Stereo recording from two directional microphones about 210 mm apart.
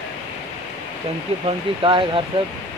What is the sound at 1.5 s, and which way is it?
Speech, 25° right (ahead or behind).